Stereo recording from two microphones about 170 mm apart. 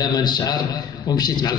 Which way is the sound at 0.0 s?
25° left (ahead or behind).